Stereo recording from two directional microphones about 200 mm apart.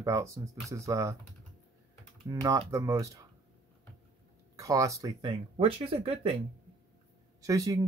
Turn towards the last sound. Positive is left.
turn(degrees=-15)  # may be behind; listen again after turning